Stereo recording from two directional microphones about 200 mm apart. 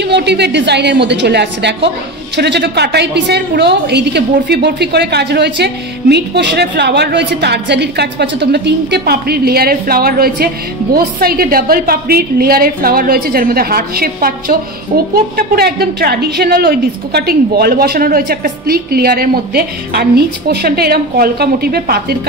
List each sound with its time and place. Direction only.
0.0 s a woman's voice: 55° right (ahead or behind)